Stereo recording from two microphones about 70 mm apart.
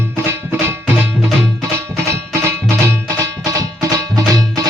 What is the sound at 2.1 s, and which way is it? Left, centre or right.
Music, right.